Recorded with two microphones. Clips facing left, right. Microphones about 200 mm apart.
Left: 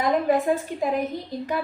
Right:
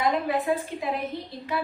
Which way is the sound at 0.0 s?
45° left (ahead or behind).